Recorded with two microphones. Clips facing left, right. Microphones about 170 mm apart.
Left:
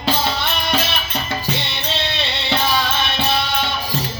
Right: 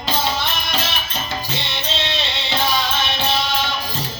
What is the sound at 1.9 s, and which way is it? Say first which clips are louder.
Music: left 1 dB; 60° left (ahead or behind).